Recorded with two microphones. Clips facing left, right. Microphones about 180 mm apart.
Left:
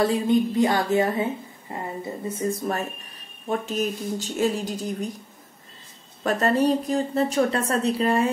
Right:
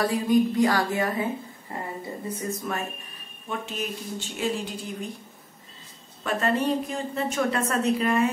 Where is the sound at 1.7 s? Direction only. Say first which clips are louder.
Left 2 dB; 20° left (ahead or behind).